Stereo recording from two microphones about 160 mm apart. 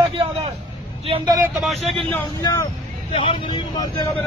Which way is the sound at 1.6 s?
Centre (ahead or behind).